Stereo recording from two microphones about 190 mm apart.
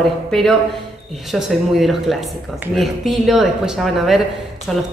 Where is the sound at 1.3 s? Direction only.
Centre (ahead or behind).